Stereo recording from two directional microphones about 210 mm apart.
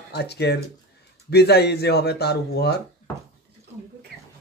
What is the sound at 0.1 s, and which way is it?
A man's voice, 50° left (ahead or behind).